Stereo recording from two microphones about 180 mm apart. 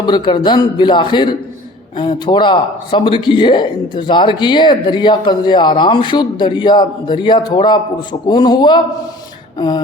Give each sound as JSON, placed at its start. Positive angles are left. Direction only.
{"t": 0.0, "sound": "speech", "side_deg": 25}